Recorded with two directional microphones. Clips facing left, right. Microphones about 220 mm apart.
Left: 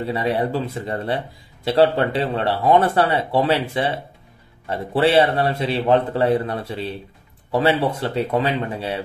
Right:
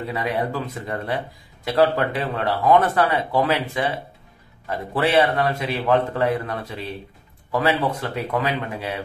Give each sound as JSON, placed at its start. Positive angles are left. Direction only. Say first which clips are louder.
{"t": 0.0, "sound": "speech", "louder": "left 3 dB", "side_deg": 30}